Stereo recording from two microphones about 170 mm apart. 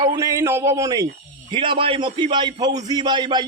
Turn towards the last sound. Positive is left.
turn(degrees=-25)  # may be behind; listen again after turning